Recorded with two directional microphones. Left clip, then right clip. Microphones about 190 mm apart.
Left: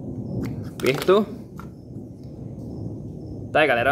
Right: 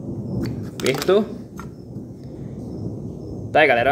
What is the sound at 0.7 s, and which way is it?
Speech, 15° left (ahead or behind).